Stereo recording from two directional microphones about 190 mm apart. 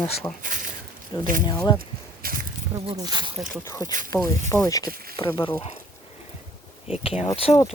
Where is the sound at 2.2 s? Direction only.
50° right (ahead or behind).